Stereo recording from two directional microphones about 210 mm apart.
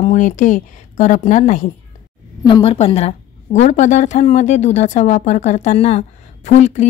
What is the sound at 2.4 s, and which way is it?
A woman's voice, 25° left (ahead or behind).